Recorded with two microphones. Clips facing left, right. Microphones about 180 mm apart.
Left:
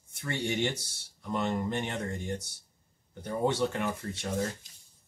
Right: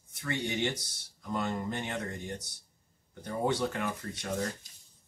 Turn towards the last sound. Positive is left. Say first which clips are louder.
# left 2 dB
turn(degrees=25)  # may be behind; listen again after turning